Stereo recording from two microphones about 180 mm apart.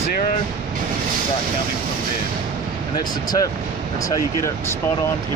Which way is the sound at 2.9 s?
20° left (ahead or behind).